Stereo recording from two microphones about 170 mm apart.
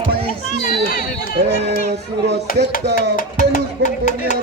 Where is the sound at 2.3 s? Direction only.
80° right.